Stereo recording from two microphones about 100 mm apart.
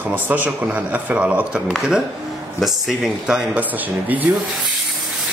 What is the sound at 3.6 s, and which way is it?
Speech, 15° right (ahead or behind).